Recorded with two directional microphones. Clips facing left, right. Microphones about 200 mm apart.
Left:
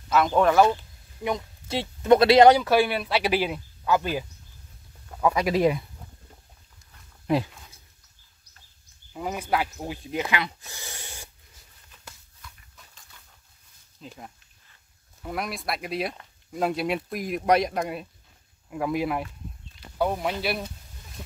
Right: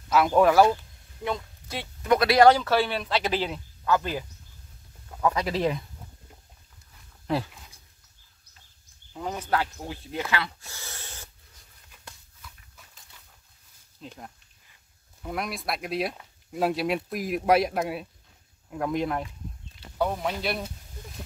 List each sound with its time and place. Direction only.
0.1 s speech: 5° right (ahead or behind)
1.7 s speech: 25° left (ahead or behind)
9.1 s speech: 10° left (ahead or behind)
12.0 s dog: centre (ahead or behind)
14.0 s speech: centre (ahead or behind)